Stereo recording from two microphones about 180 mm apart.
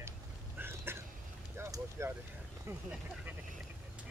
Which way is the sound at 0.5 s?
10° right (ahead or behind).